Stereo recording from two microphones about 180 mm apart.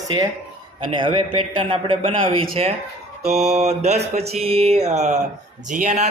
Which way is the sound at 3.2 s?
35° right (ahead or behind).